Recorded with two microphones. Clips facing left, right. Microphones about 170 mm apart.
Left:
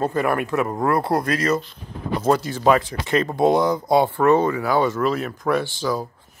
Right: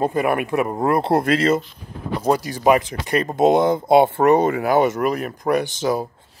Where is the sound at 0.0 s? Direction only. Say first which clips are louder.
Right 2 dB; 15° right (ahead or behind).